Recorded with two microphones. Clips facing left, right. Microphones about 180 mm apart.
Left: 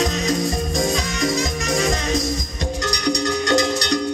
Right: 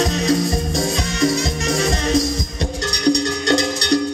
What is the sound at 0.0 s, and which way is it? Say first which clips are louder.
Music: right 3 dB; 30° right (ahead or behind).